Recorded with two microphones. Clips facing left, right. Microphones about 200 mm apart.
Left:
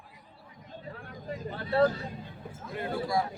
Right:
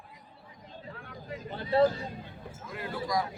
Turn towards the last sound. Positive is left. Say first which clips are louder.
# left 2 dB
turn(degrees=30)  # may be behind; listen again after turning